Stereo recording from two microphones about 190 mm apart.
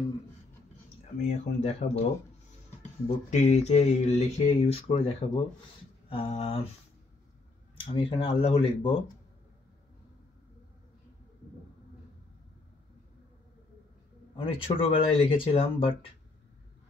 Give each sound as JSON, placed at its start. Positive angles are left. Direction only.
{"t": 1.2, "sound": "speech", "side_deg": 40}
{"t": 3.3, "sound": "speech", "side_deg": 35}
{"t": 7.8, "sound": "speech", "side_deg": 30}
{"t": 14.3, "sound": "speech", "side_deg": 30}